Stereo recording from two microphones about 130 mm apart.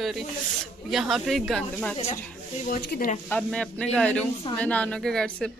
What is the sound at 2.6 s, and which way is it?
Speech, 80° left.